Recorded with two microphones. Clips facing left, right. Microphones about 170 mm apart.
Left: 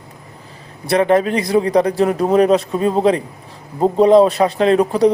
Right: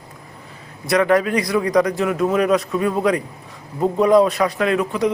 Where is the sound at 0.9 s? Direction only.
25° left (ahead or behind).